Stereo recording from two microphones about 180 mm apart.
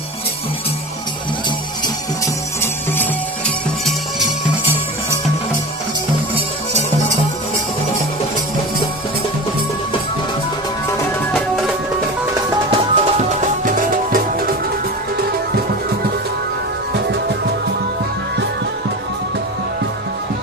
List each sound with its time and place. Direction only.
2.6 s music: 10° left (ahead or behind)
11.3 s music: centre (ahead or behind)
12.5 s music: 25° right (ahead or behind)
13.1 s music: 45° right (ahead or behind)